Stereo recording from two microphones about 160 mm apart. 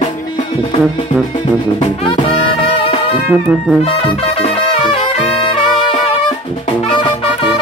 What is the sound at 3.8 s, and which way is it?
Music, 35° left (ahead or behind).